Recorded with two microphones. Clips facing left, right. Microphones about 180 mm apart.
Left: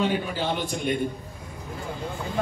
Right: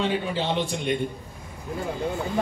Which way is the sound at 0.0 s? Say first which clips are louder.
Even; 25° right (ahead or behind).